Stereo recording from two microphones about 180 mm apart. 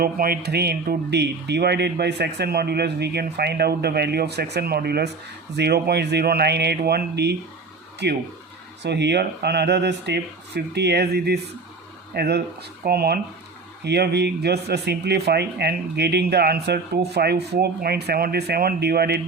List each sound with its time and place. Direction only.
0.0 s speech: 55° right (ahead or behind)